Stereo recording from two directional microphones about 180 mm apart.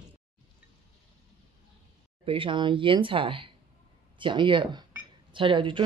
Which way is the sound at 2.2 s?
30° right (ahead or behind).